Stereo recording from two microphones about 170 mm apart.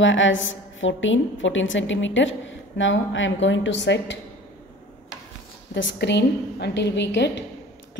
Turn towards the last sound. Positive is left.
turn(degrees=90)